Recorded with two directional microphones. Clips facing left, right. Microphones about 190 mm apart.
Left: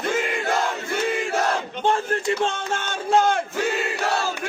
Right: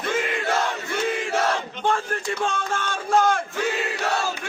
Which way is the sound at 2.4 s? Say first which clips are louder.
Left 1 dB; 25° left (ahead or behind).